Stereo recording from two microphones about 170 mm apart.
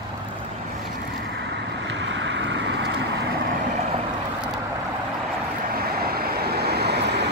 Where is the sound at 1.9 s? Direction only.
90° right.